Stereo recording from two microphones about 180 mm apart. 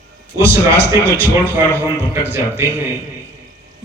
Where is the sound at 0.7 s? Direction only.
15° right (ahead or behind).